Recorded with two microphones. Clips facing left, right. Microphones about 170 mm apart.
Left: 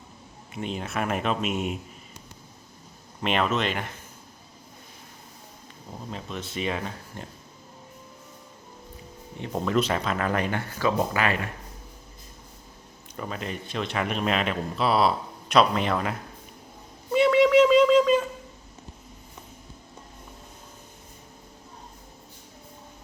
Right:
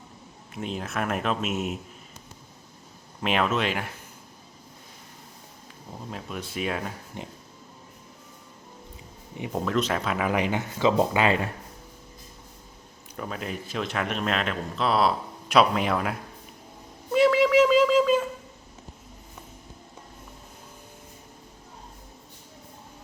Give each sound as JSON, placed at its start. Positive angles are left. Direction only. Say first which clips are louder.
{"t": 0.5, "sound": "speech", "louder": "left 1 dB", "side_deg": 0}
{"t": 3.2, "sound": "speech", "louder": "even", "side_deg": 0}
{"t": 6.1, "sound": "speech", "louder": "even", "side_deg": -5}
{"t": 7.2, "sound": "speech", "louder": "right 4 dB", "side_deg": -15}
{"t": 9.4, "sound": "speech", "louder": "left 1 dB", "side_deg": -5}
{"t": 13.1, "sound": "speech", "louder": "even", "side_deg": 0}
{"t": 17.1, "sound": "a sound", "louder": "left 1 dB", "side_deg": 0}